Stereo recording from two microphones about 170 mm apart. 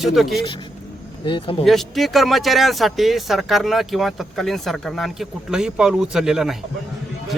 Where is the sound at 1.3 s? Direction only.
30° left (ahead or behind).